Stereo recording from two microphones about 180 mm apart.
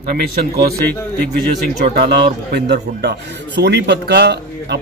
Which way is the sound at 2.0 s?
60° right (ahead or behind).